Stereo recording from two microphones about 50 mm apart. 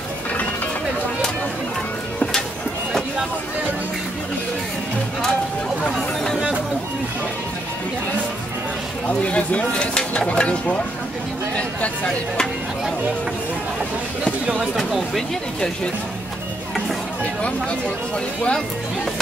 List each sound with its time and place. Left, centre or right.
9.2 s speech: left